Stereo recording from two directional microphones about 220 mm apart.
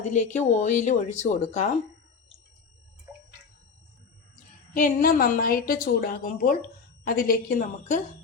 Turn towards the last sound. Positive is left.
turn(degrees=35)  # may be behind; listen again after turning